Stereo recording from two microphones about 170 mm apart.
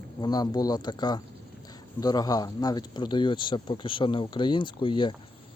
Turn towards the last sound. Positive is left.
turn(degrees=30)  # may be behind; listen again after turning